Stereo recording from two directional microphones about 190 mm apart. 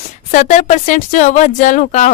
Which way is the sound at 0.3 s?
40° left (ahead or behind).